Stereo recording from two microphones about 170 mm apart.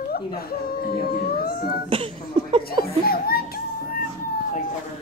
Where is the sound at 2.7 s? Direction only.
60° left (ahead or behind).